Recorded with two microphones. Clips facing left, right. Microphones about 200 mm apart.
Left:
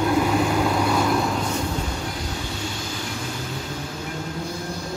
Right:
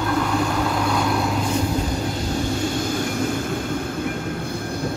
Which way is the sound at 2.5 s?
50° right (ahead or behind).